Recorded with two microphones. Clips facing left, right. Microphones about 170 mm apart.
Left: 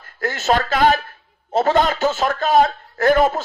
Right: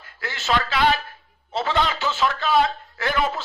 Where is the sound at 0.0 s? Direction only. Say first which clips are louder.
Left 9 dB; 45° left (ahead or behind).